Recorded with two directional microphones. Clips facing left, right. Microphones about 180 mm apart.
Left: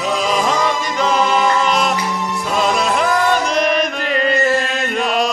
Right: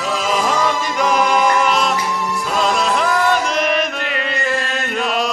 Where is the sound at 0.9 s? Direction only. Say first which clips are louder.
Even; 15° right (ahead or behind).